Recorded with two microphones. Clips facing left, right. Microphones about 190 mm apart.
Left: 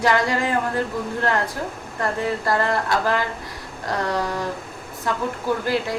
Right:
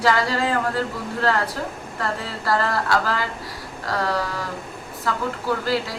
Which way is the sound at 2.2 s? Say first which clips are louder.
Left 2 dB; 20° left (ahead or behind).